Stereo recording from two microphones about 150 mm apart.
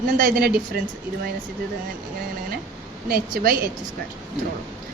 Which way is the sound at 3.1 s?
75° right (ahead or behind).